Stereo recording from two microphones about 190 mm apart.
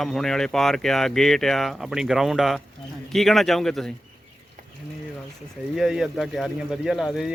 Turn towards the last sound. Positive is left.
turn(degrees=0)  # may be behind; listen again after turning